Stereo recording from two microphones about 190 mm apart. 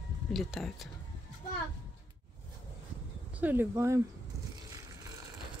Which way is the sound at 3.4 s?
10° right (ahead or behind).